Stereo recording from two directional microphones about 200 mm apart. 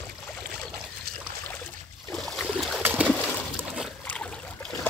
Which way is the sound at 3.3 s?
5° right (ahead or behind).